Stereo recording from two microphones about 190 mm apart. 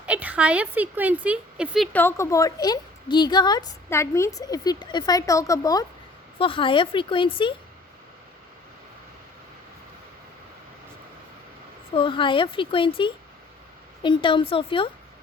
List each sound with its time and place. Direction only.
0.0 s a woman's voice: 5° right (ahead or behind); by 7.5 s 25° left (ahead or behind)
11.9 s speech: 25° left (ahead or behind)